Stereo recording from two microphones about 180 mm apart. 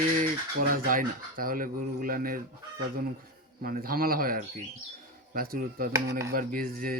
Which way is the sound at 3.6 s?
55° right (ahead or behind).